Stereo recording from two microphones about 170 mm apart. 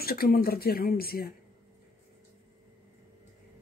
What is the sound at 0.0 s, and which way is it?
Speech, 60° left (ahead or behind).